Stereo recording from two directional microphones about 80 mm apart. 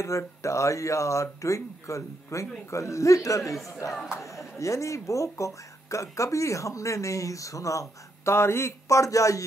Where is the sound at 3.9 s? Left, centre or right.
Centre.